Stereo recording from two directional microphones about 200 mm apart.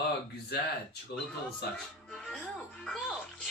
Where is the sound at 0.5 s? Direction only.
55° left (ahead or behind).